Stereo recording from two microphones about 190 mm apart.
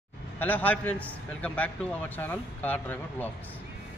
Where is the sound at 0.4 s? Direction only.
10° left (ahead or behind).